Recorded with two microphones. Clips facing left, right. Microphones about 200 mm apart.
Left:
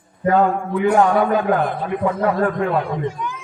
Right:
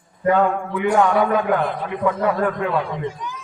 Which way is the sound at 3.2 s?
55° left (ahead or behind).